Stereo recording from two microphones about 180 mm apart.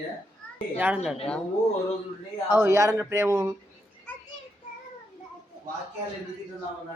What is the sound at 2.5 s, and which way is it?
Speech, 15° right (ahead or behind).